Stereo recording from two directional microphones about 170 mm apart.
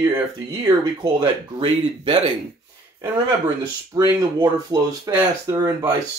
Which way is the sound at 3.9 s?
25° right (ahead or behind).